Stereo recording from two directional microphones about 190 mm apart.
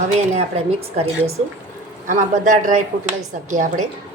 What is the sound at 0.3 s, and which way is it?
A woman's voice, 30° right (ahead or behind).